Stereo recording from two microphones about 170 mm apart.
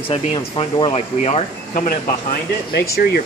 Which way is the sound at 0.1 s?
30° left (ahead or behind).